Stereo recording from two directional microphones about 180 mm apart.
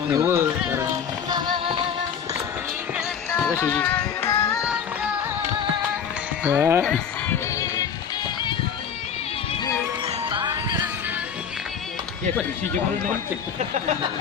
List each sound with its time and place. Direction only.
0.1 s speech: 15° right (ahead or behind)
1.3 s music: 25° right (ahead or behind)
3.6 s music: 10° left (ahead or behind)
6.4 s speech: 10° right (ahead or behind)
6.8 s speech: 5° left (ahead or behind)
10.2 s music: 25° right (ahead or behind)
13.6 s speech: 40° right (ahead or behind)